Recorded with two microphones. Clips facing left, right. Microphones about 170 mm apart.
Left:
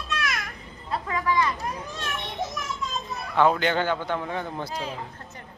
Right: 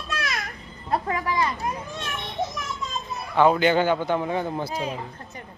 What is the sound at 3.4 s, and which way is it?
A man's voice, 5° right (ahead or behind).